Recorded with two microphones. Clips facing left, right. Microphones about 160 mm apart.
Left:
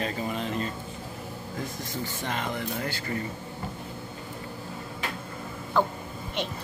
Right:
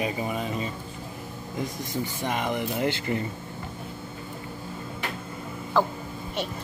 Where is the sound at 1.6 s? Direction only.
20° right (ahead or behind).